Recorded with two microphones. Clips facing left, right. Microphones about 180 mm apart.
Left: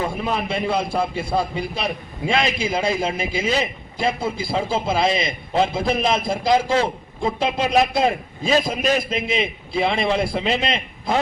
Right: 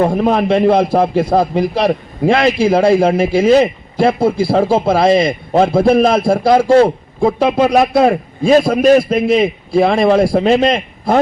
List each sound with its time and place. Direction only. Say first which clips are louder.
0.1 s a man's voice: right 11 dB; 40° right (ahead or behind)
0.3 s a man's voice: right 11 dB; 70° right (ahead or behind); by 11.2 s 50° right (ahead or behind)